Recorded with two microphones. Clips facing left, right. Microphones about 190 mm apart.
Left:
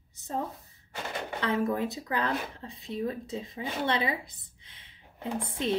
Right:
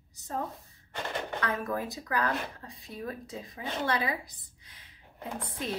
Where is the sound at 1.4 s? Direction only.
25° left (ahead or behind).